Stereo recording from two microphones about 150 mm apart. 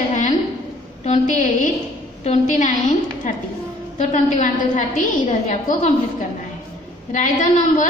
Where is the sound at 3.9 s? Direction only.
55° left (ahead or behind).